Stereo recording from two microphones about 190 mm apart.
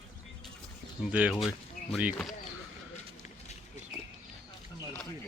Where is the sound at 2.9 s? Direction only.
35° left (ahead or behind).